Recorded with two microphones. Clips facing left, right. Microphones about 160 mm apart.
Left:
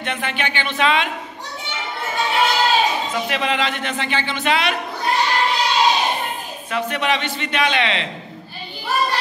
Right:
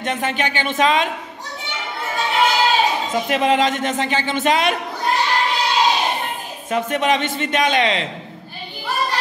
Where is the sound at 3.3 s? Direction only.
45° right (ahead or behind).